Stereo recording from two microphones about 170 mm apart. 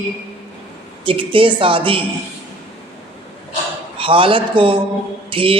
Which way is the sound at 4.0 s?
30° right (ahead or behind).